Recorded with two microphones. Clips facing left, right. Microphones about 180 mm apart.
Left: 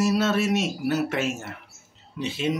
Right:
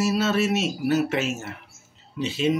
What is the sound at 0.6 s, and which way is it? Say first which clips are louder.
Speech: right 2 dB; 55° left (ahead or behind).